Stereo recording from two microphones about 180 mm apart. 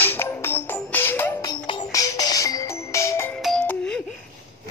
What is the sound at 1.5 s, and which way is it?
Music, 25° left (ahead or behind).